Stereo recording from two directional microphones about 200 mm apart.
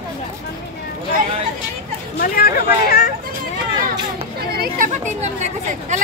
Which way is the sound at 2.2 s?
45° left (ahead or behind).